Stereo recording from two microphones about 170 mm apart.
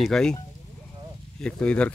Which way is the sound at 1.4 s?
5° left (ahead or behind).